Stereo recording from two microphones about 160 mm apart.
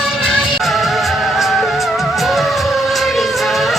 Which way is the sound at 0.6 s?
Centre (ahead or behind).